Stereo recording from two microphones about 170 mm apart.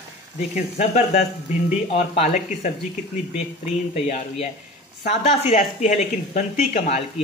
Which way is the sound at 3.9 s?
40° left (ahead or behind).